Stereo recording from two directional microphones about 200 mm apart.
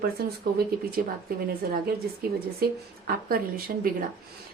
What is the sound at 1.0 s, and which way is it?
Speech, 45° right (ahead or behind).